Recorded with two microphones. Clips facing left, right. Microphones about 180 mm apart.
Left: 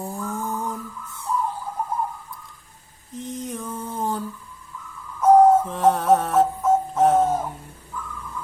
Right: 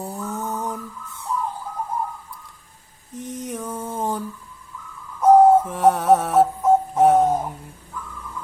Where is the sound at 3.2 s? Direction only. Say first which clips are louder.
Right 1 dB; 10° right (ahead or behind).